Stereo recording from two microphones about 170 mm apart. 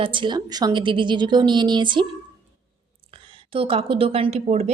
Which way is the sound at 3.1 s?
30° right (ahead or behind).